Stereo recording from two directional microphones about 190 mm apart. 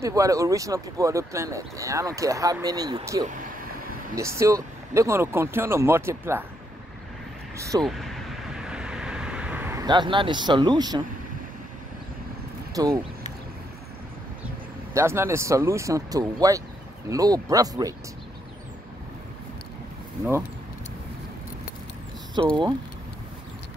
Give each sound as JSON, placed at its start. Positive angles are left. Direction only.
{"t": 0.0, "sound": "speech", "side_deg": -15}
{"t": 3.3, "sound": "speech", "side_deg": -45}
{"t": 4.1, "sound": "speech", "side_deg": -15}
{"t": 7.5, "sound": "speech", "side_deg": -15}
{"t": 7.8, "sound": "vehicle", "side_deg": 0}
{"t": 9.8, "sound": "speech", "side_deg": -25}
{"t": 12.7, "sound": "speech", "side_deg": -20}
{"t": 15.0, "sound": "speech", "side_deg": -15}
{"t": 22.4, "sound": "speech", "side_deg": -25}